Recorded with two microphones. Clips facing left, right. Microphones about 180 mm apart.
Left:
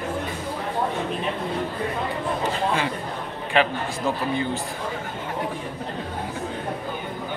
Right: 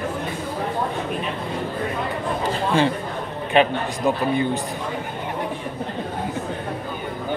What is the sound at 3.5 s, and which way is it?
A man's voice, 20° right (ahead or behind).